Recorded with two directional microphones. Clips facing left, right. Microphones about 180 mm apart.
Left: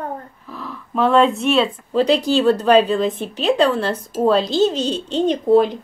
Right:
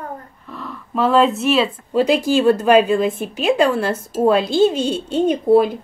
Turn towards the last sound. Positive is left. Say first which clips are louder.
# right 1 dB
turn(degrees=-5)  # may be behind; listen again after turning